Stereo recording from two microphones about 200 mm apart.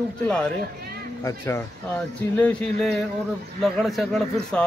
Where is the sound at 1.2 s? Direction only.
15° left (ahead or behind).